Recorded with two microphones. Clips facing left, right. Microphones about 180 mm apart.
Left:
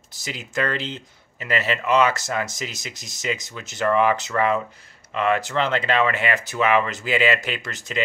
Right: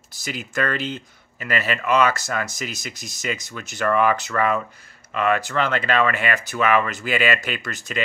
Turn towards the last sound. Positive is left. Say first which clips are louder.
# right 1 dB
turn(degrees=20)  # may be behind; listen again after turning